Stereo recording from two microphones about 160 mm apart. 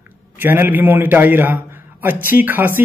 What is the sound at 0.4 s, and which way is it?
A man's voice, 15° right (ahead or behind).